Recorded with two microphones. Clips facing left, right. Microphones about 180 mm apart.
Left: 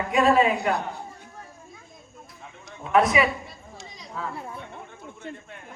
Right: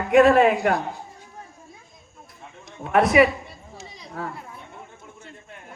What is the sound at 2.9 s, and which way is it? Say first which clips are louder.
Speech: right 4 dB; 55° right (ahead or behind).